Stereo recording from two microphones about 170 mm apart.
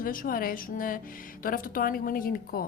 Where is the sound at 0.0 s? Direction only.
55° left (ahead or behind).